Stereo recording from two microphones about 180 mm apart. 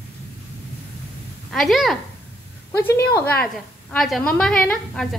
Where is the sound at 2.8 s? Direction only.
15° left (ahead or behind).